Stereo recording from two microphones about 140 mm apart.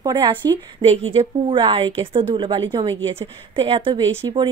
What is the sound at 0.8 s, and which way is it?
A woman's voice, 45° right (ahead or behind).